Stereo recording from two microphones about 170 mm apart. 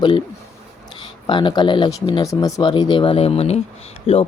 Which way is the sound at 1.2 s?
25° left (ahead or behind).